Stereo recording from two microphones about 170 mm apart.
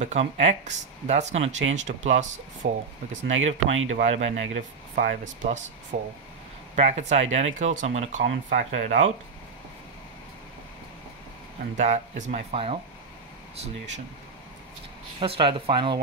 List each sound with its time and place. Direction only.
0.0 s speech: 40° right (ahead or behind)
11.7 s speech: 45° right (ahead or behind)
15.1 s speech: 30° right (ahead or behind)